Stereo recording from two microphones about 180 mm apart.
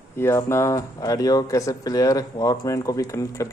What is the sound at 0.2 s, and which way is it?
Speech, 15° left (ahead or behind).